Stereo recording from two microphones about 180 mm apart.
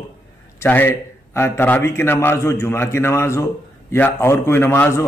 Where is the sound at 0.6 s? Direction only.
10° left (ahead or behind).